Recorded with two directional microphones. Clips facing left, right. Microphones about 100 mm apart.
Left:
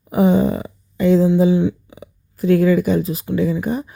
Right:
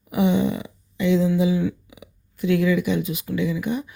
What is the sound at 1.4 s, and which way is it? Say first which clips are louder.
Speech: left 6 dB; 30° left (ahead or behind).